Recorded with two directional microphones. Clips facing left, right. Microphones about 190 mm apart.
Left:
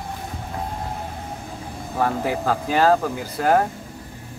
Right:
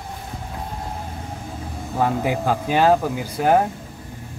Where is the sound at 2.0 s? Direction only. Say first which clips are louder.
Right 1 dB; 15° right (ahead or behind).